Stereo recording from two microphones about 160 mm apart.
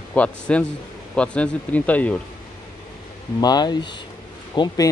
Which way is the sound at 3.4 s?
25° left (ahead or behind).